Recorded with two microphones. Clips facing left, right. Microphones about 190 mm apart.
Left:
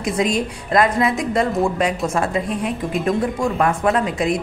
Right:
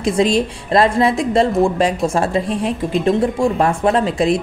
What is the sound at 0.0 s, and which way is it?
A woman's voice, 30° right (ahead or behind).